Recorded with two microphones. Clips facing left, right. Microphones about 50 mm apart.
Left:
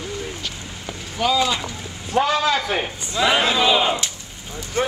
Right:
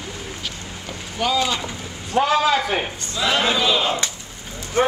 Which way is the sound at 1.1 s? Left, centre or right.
Centre.